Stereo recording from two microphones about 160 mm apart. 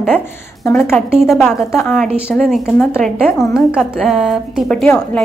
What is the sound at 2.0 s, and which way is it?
A woman's voice, 5° right (ahead or behind).